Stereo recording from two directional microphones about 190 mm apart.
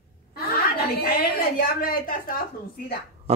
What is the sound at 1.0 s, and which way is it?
A woman's voice, 50° left (ahead or behind).